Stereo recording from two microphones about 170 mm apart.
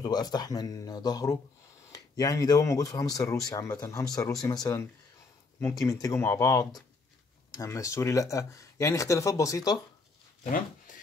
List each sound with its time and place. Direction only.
0.0 s speech: 25° left (ahead or behind)
10.4 s speech: 50° left (ahead or behind)